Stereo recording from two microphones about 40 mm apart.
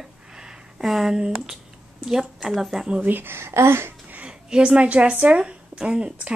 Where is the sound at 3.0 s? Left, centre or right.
Right.